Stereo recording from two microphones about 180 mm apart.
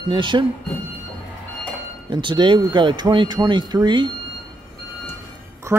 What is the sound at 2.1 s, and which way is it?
Speech, 25° right (ahead or behind).